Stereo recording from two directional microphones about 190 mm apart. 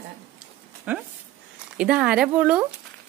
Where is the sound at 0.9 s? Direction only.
10° right (ahead or behind).